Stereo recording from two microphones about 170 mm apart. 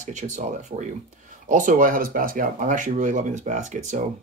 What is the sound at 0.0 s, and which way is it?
Speech, 45° right (ahead or behind).